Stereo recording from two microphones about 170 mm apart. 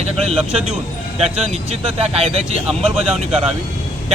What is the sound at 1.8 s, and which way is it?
Speech, 35° right (ahead or behind).